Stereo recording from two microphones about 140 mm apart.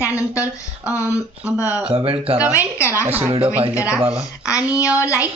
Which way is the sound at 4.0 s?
40° right (ahead or behind).